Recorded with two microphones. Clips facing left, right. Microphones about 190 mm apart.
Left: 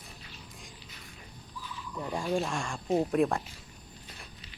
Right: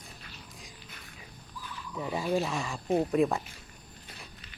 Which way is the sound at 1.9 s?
5° right (ahead or behind).